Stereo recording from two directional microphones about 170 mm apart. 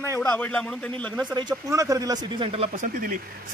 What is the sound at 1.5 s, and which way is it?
Speech, 20° right (ahead or behind).